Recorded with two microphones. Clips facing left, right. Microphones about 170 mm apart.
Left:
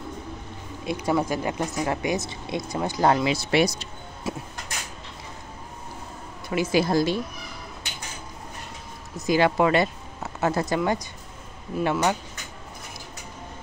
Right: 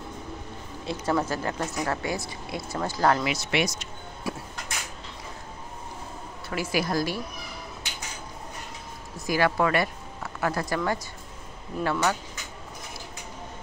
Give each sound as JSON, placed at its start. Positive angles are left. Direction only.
{"t": 0.8, "sound": "speech", "side_deg": 15}
{"t": 6.5, "sound": "speech", "side_deg": 20}
{"t": 9.1, "sound": "speech", "side_deg": 20}